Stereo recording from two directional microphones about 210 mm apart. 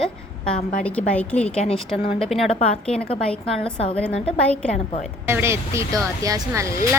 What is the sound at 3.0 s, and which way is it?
Speech, 25° left (ahead or behind).